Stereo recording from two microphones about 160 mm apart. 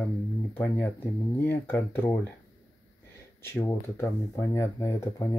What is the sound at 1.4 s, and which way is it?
Speech, 15° left (ahead or behind).